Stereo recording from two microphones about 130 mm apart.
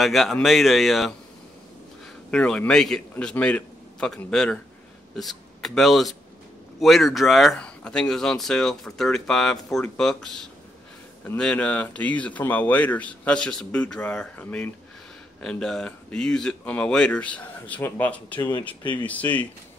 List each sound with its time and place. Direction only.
0.0 s speech: centre (ahead or behind)
2.3 s speech: 10° left (ahead or behind)
18.8 s speech: 35° left (ahead or behind)
19.0 s speech: 10° left (ahead or behind)